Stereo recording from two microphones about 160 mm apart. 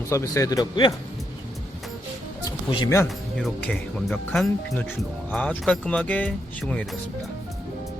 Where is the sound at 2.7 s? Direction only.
20° left (ahead or behind).